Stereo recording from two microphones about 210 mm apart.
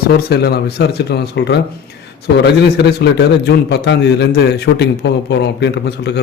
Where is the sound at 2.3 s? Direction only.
55° left (ahead or behind).